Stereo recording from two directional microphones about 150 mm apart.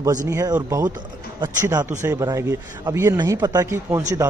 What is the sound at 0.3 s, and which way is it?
Speech, 20° right (ahead or behind).